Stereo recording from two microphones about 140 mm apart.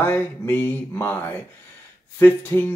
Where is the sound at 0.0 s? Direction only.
15° left (ahead or behind).